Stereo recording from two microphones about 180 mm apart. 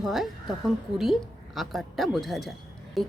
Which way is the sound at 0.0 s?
Centre (ahead or behind).